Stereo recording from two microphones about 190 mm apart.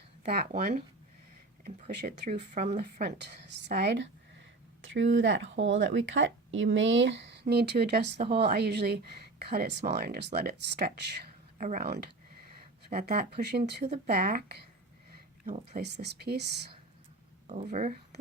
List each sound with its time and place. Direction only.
0.3 s speech: 55° right (ahead or behind)
1.9 s speech: 60° right (ahead or behind)
4.9 s speech: 80° right; by 14.4 s 50° right (ahead or behind)
15.7 s speech: 60° right (ahead or behind)
17.4 s speech: 40° right (ahead or behind)